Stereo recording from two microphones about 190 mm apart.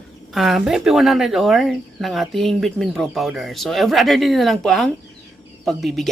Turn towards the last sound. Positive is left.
turn(degrees=0)  # may be behind; listen again after turning